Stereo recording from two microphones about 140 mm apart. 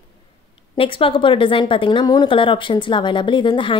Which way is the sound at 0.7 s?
40° left (ahead or behind).